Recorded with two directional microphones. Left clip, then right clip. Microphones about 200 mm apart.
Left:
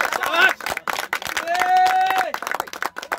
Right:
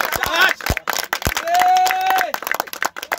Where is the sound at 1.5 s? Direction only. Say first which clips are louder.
Right 2 dB; 55° right (ahead or behind).